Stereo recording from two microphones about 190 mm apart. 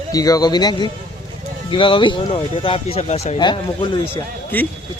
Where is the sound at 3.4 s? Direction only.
25° left (ahead or behind).